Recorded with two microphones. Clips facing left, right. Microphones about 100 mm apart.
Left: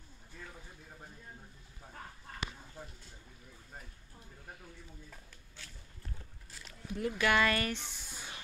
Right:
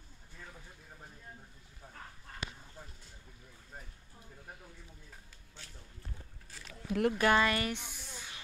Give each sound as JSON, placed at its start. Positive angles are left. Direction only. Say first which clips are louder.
{"t": 6.9, "sound": "speech", "louder": "right 6 dB", "side_deg": -70}
{"t": 7.2, "sound": "speech", "louder": "even", "side_deg": -35}
{"t": 7.4, "sound": "speech", "louder": "even", "side_deg": -20}